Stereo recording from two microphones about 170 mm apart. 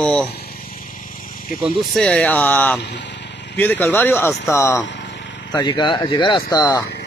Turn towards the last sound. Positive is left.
turn(degrees=25)  # may be behind; listen again after turning